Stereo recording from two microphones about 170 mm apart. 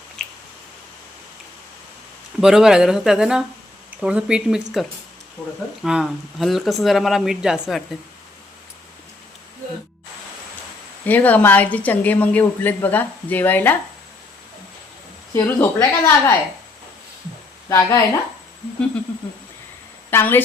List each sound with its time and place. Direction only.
0.2 s squish: 5° left (ahead or behind)
2.4 s speech: 5° right (ahead or behind)
11.0 s a woman's voice: 10° left (ahead or behind)
15.3 s a woman's voice: 10° left (ahead or behind)
17.7 s a woman's voice: 20° left (ahead or behind)
20.1 s a woman's voice: 10° left (ahead or behind)